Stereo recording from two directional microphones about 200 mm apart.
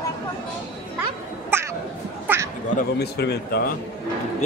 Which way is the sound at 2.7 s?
55° left (ahead or behind).